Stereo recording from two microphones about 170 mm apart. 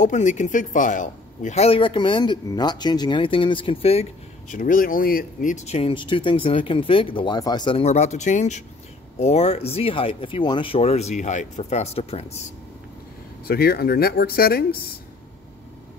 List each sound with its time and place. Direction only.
0.0 s speech: 45° left (ahead or behind)
13.5 s speech: 65° left (ahead or behind)